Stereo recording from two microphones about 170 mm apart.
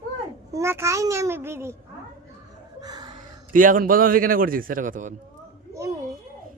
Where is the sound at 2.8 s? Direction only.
25° right (ahead or behind).